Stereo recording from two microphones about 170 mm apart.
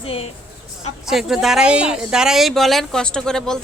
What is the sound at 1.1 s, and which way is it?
Speech, centre (ahead or behind).